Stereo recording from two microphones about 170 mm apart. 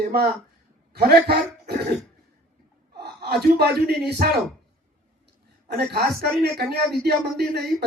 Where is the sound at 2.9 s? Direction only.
70° right (ahead or behind).